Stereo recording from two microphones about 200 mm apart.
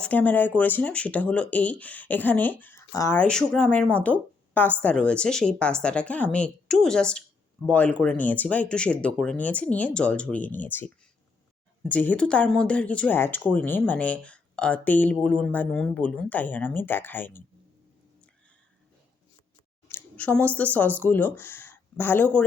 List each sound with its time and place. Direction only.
0.0 s speech: 10° left (ahead or behind)
19.9 s speech: 5° left (ahead or behind)